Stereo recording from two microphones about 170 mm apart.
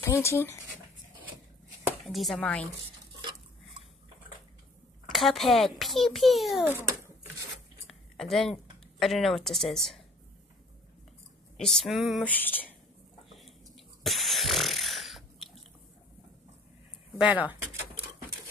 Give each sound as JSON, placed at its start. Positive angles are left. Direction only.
{"t": 0.0, "sound": "speech", "side_deg": 15}
{"t": 2.0, "sound": "a child's voice", "side_deg": 0}
{"t": 5.1, "sound": "a child's voice", "side_deg": 0}
{"t": 6.7, "sound": "a sound", "side_deg": -15}
{"t": 7.8, "sound": "a sound", "side_deg": 0}
{"t": 9.0, "sound": "a child's voice", "side_deg": 0}
{"t": 11.5, "sound": "a child's voice", "side_deg": 0}
{"t": 13.3, "sound": "a sound", "side_deg": 0}
{"t": 17.2, "sound": "speech", "side_deg": -10}